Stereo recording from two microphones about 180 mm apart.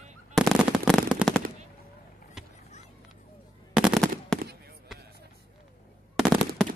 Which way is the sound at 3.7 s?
Centre (ahead or behind).